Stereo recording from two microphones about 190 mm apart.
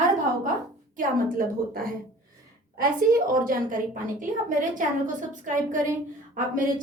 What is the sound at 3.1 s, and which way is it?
Speech, 45° right (ahead or behind).